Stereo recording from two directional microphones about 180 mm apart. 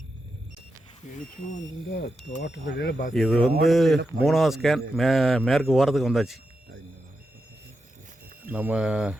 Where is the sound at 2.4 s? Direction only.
75° left (ahead or behind).